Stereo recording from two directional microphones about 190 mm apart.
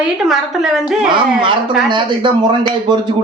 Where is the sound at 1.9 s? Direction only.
25° right (ahead or behind).